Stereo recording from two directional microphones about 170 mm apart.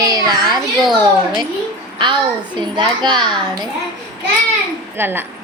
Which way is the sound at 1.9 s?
25° right (ahead or behind).